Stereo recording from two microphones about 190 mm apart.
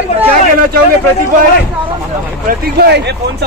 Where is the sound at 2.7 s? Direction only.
60° right (ahead or behind).